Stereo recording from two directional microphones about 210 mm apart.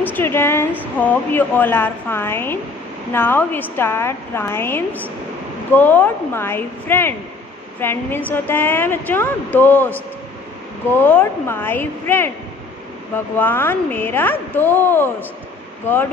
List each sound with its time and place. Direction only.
0.0 s a woman's voice: 10° left (ahead or behind)
11.1 s a woman's voice: 10° left (ahead or behind)
13.4 s a woman's voice: 10° left (ahead or behind)